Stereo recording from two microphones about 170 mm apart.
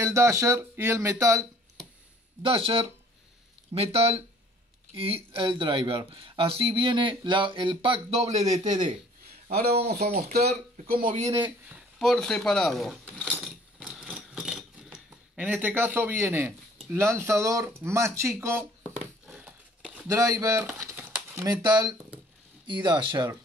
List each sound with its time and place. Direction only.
0.0 s speech: 15° right (ahead or behind)
2.4 s speech: 35° right (ahead or behind)
9.8 s speech: 70° right (ahead or behind)
11.7 s a sound: centre (ahead or behind)
16.9 s speech: 15° right (ahead or behind)
19.2 s crumpling: 5° right (ahead or behind)
20.1 s speech: 20° right (ahead or behind)
20.7 s crumpling: 15° right (ahead or behind)
22.7 s speech: 25° right (ahead or behind)